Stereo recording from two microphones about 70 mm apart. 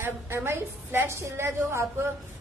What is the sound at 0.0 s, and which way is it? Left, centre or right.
A woman's voice, right.